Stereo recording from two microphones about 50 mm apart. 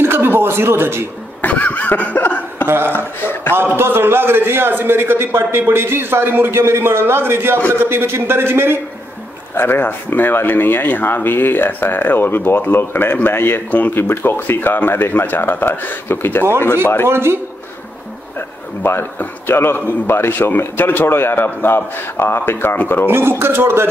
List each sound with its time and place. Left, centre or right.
0.0 s a sound: right
1.4 s laughter: left
3.5 s a man's voice: right
6.6 s a man's voice: right
9.6 s speech: left
13.7 s speech: left
13.9 s speech: left
17.1 s a man's voice: right
18.8 s speech: left
23.0 s a man's voice: right